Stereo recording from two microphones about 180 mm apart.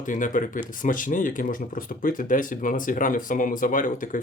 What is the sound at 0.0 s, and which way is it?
Speech, 45° left (ahead or behind).